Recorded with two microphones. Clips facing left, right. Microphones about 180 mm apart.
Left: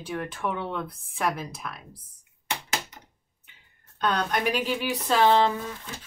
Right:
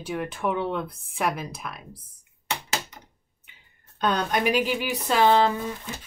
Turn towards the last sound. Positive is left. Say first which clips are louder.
# right 2 dB
turn(degrees=-10)  # may be behind; listen again after turning